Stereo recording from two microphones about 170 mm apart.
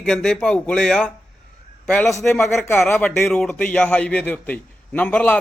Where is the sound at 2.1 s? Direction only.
15° left (ahead or behind).